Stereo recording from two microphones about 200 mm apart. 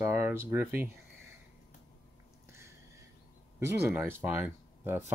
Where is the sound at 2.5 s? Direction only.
15° right (ahead or behind).